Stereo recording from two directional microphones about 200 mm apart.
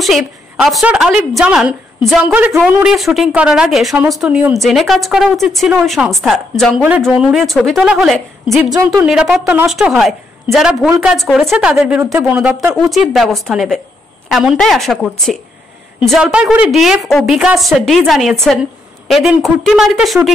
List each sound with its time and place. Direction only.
0.7 s speech: centre (ahead or behind)